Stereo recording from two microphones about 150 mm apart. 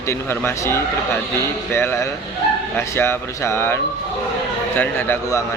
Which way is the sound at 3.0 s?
15° left (ahead or behind).